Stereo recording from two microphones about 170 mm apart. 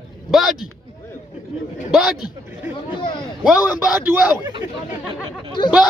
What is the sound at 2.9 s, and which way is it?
Speech, 25° left (ahead or behind).